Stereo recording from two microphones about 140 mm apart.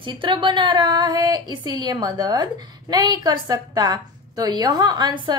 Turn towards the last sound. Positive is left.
turn(degrees=-30)  # may be behind; listen again after turning